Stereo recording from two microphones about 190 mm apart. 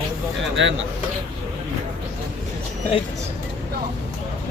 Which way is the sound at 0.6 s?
75° right (ahead or behind).